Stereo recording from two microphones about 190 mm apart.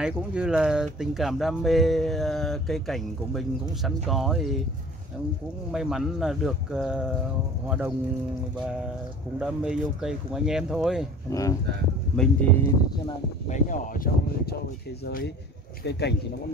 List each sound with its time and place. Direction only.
0.0 s speech: 5° right (ahead or behind)
5.7 s speech: centre (ahead or behind)
9.4 s speech: 5° right (ahead or behind)
12.2 s speech: 10° left (ahead or behind)
13.5 s speech: 40° left (ahead or behind)
15.0 s speech: 60° left (ahead or behind)